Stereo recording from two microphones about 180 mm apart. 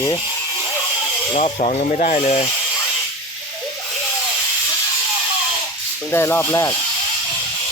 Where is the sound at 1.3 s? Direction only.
35° left (ahead or behind).